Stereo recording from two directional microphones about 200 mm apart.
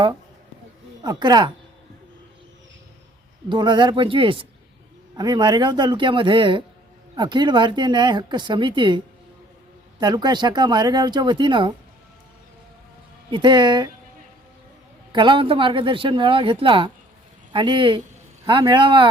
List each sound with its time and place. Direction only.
1.0 s speech: 20° right (ahead or behind)
3.5 s speech: 20° right (ahead or behind)
10.0 s speech: 20° right (ahead or behind)
13.3 s speech: 25° right (ahead or behind)
15.1 s speech: 25° right (ahead or behind)